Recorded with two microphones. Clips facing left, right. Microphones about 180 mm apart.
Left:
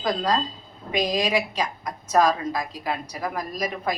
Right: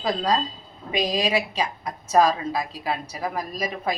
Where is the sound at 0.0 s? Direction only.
10° right (ahead or behind).